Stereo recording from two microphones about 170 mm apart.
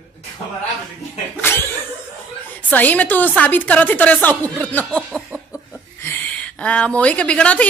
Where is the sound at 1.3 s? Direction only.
10° left (ahead or behind).